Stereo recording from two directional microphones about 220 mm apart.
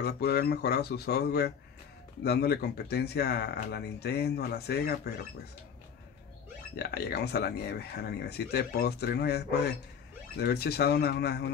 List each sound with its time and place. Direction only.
0.0 s speech: 45° left (ahead or behind)
6.8 s speech: 45° left (ahead or behind)